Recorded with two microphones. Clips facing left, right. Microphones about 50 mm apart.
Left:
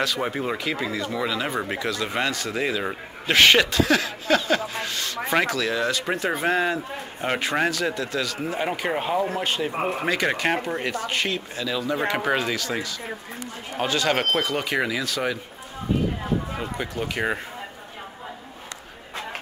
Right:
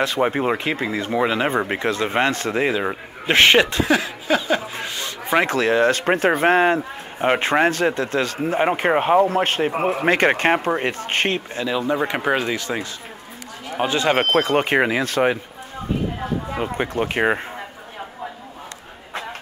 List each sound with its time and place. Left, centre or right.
0.0 s a man's voice: right; by 4.6 s centre
4.6 s a sound: right
5.5 s a man's voice: right
12.3 s speech: centre
12.5 s a man's voice: right
16.5 s a man's voice: right